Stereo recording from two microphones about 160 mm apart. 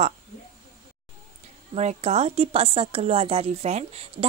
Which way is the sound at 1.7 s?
40° right (ahead or behind).